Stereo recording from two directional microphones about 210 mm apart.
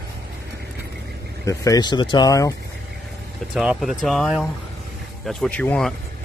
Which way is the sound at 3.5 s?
Centre (ahead or behind).